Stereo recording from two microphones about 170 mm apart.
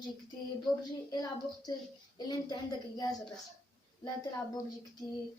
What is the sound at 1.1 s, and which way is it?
Speech, 20° left (ahead or behind).